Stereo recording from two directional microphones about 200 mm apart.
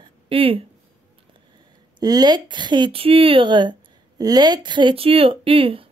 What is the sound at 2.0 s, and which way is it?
Speech, 20° right (ahead or behind).